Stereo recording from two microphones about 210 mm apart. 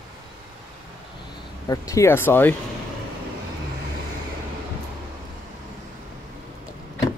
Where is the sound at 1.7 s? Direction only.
15° left (ahead or behind).